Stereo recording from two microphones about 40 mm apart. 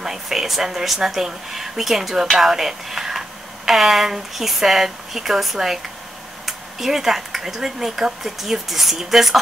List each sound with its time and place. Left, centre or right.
0.0 s speech: centre